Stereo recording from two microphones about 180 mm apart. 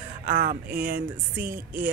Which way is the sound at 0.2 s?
50° right (ahead or behind).